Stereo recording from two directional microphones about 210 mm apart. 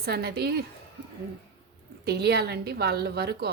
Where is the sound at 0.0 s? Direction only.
50° right (ahead or behind).